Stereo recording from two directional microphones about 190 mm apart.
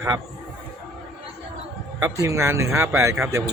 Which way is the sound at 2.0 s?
15° right (ahead or behind).